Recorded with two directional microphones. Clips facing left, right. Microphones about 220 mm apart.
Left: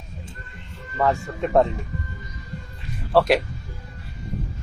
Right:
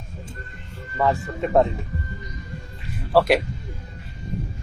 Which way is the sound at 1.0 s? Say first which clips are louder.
Even; centre (ahead or behind).